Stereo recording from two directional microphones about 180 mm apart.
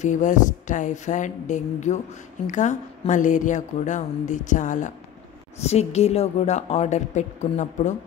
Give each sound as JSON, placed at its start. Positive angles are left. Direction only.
{"t": 0.0, "sound": "a woman's voice", "side_deg": 45}